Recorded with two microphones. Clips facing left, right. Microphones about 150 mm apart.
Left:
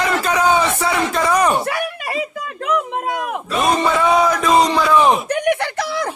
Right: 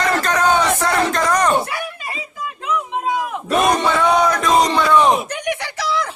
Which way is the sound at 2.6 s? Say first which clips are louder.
Left 1 dB; 65° left (ahead or behind).